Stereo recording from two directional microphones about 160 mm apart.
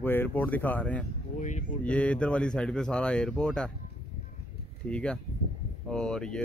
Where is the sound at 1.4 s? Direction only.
50° left (ahead or behind).